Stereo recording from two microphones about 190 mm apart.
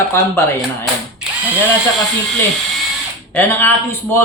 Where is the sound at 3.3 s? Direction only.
10° left (ahead or behind).